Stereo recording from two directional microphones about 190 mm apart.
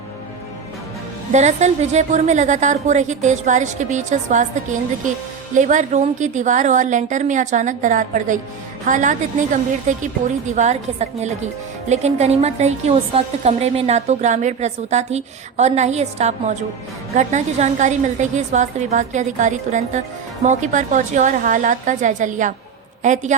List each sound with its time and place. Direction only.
1.3 s a woman's voice: 35° right (ahead or behind)